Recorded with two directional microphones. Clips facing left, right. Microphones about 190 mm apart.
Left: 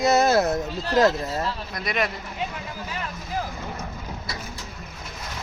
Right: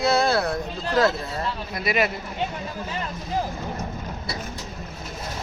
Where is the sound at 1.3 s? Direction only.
Centre (ahead or behind).